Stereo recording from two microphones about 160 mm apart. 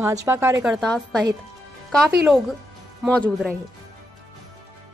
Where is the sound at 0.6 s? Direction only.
5° left (ahead or behind).